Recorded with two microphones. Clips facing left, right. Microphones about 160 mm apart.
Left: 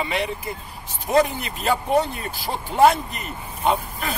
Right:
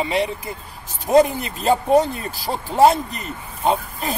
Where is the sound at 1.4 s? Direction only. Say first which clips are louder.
Right 4 dB; 35° right (ahead or behind).